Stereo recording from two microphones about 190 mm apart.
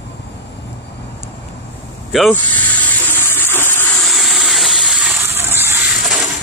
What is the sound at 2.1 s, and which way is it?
Speech, 5° left (ahead or behind).